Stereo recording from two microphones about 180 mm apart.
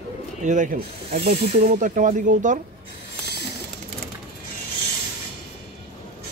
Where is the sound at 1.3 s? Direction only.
40° right (ahead or behind).